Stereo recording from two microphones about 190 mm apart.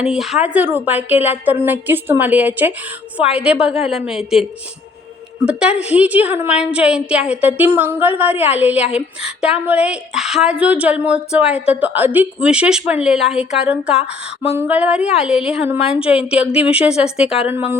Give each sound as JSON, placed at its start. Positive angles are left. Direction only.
{"t": 0.0, "sound": "a woman's voice", "side_deg": 0}
{"t": 5.5, "sound": "a woman's voice", "side_deg": -5}
{"t": 14.1, "sound": "speech", "side_deg": 30}
{"t": 14.6, "sound": "a woman's voice", "side_deg": -5}